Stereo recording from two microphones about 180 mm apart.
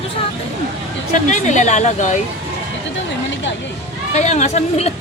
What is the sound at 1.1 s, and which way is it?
Speech, 40° left (ahead or behind).